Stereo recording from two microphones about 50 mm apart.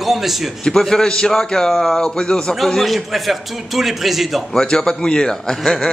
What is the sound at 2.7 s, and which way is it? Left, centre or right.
A man's voice, centre.